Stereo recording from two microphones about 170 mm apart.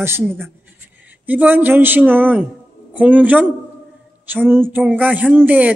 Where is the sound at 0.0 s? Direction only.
15° right (ahead or behind).